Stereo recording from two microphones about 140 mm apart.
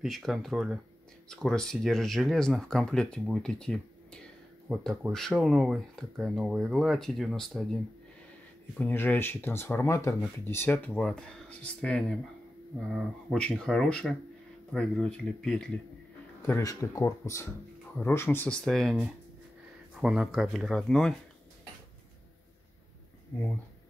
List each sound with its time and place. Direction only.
0.0 s speech: centre (ahead or behind)
16.4 s speech: 20° left (ahead or behind); by 21.2 s 5° left (ahead or behind)